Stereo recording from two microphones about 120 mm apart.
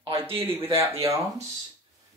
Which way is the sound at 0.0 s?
50° right (ahead or behind).